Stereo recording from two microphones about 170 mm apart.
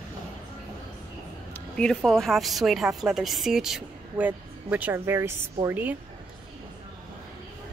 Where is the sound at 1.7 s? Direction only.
5° left (ahead or behind); by 6.0 s 10° right (ahead or behind).